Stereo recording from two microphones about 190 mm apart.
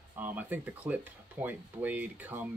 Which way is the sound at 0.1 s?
10° right (ahead or behind).